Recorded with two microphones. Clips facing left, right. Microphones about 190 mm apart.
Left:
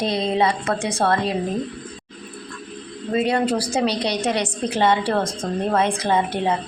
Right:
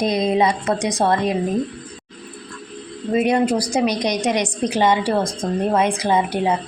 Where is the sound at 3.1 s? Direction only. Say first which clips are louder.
Right 3 dB; 15° right (ahead or behind).